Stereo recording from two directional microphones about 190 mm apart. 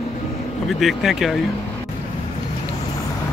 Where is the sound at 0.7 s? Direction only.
Centre (ahead or behind).